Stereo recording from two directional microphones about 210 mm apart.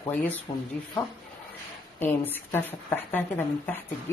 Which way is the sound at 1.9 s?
10° left (ahead or behind).